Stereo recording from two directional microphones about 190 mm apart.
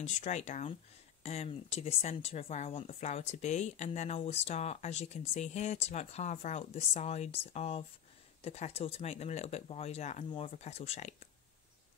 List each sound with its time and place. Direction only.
0.0 s speech: 40° left (ahead or behind)